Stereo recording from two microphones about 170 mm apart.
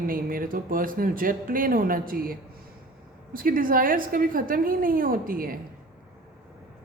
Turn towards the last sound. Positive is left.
turn(degrees=-55)  # may be behind; listen again after turning